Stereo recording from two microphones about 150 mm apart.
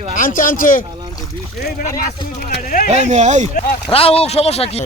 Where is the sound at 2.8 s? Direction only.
50° right (ahead or behind).